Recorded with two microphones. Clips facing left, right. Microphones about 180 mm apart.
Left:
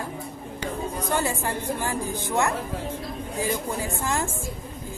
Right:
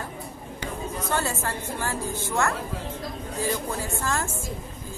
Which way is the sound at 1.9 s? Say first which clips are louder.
Left 2 dB; 15° left (ahead or behind).